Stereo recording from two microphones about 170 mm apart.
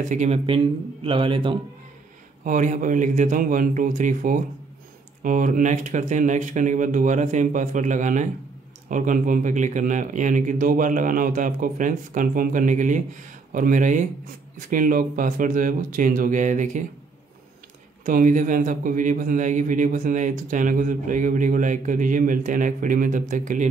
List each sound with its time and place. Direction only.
0.0 s a man's voice: 45° right (ahead or behind)
1.0 s a man's voice: 30° right (ahead or behind)
2.4 s a man's voice: 50° right (ahead or behind)
18.0 s a man's voice: 50° right (ahead or behind)